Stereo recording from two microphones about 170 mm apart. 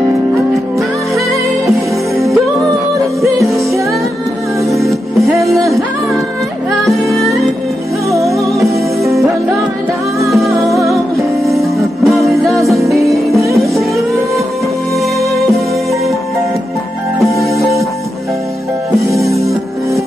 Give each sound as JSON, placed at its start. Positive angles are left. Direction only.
{"t": 1.7, "sound": "music", "side_deg": 0}
{"t": 4.6, "sound": "music", "side_deg": 0}
{"t": 6.9, "sound": "music", "side_deg": 0}
{"t": 8.1, "sound": "music", "side_deg": -20}
{"t": 10.2, "sound": "music", "side_deg": 0}
{"t": 17.2, "sound": "music", "side_deg": 0}
{"t": 19.1, "sound": "music", "side_deg": 0}